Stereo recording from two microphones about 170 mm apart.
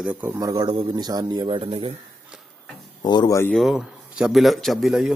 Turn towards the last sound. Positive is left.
turn(degrees=0)  # may be behind; listen again after turning